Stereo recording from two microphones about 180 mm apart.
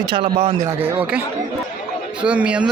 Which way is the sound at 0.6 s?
10° right (ahead or behind).